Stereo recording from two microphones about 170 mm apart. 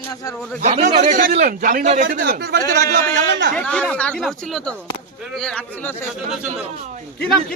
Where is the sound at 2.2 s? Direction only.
75° right (ahead or behind); by 3.5 s 90° right.